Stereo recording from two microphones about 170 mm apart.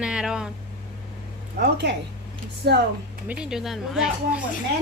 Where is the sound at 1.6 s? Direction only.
75° right (ahead or behind).